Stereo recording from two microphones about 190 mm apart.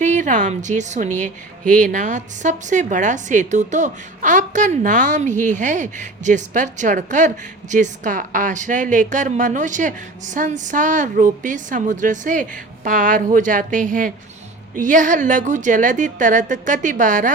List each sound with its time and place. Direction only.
0.0 s a woman's voice: 40° right (ahead or behind)